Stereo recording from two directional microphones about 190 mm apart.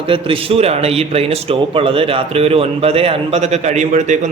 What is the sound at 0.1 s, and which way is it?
Speech, 30° right (ahead or behind).